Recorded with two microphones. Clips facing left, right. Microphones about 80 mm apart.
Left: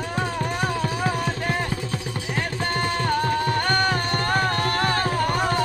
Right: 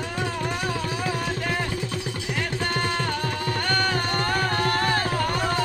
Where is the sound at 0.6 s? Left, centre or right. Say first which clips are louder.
Left 3 dB; left.